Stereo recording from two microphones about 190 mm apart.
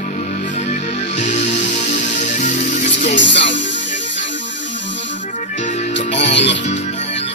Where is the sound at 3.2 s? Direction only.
70° left (ahead or behind).